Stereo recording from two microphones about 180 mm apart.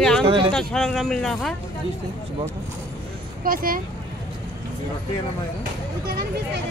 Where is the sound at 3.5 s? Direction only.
50° right (ahead or behind).